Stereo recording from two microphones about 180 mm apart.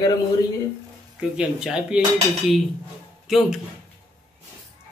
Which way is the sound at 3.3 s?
Centre (ahead or behind).